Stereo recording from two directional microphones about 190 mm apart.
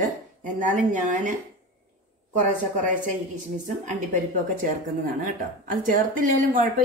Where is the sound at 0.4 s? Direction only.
40° right (ahead or behind).